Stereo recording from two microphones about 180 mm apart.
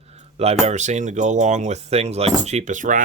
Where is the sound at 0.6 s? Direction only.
40° right (ahead or behind).